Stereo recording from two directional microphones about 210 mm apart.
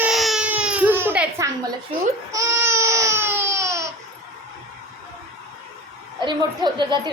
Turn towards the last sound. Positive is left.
turn(degrees=-20)  # may be behind; listen again after turning